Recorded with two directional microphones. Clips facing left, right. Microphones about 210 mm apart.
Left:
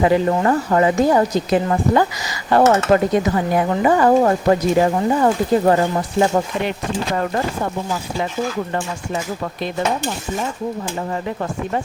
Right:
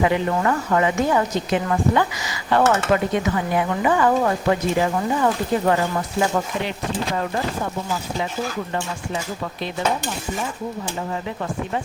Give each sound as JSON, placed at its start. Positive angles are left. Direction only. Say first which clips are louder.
{"t": 0.0, "sound": "a woman's voice", "louder": "left 4 dB", "side_deg": 35}